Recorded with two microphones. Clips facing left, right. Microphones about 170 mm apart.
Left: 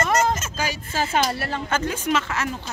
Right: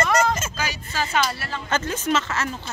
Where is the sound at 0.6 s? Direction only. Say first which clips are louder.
Left 2 dB; 45° left (ahead or behind).